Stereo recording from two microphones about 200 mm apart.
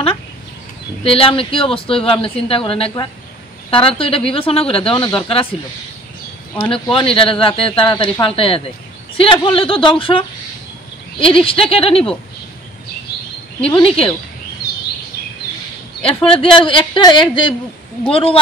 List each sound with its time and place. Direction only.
1.0 s speech: 30° left (ahead or behind)
6.7 s speech: 25° left (ahead or behind)
13.7 s speech: 25° left (ahead or behind)
16.0 s speech: 25° left (ahead or behind)